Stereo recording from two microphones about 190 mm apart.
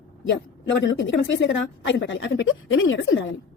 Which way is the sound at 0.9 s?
80° left.